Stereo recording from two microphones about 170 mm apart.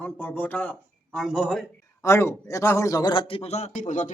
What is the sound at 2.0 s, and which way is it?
A man's voice, 15° left (ahead or behind).